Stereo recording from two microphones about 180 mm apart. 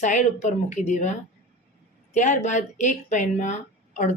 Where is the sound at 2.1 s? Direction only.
40° left (ahead or behind).